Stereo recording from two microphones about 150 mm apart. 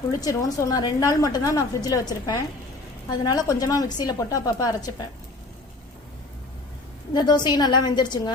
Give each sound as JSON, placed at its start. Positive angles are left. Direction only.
{"t": 0.2, "sound": "a woman's voice", "side_deg": 25}
{"t": 7.1, "sound": "a woman's voice", "side_deg": 30}